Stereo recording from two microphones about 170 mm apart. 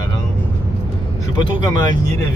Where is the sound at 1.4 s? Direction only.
25° left (ahead or behind).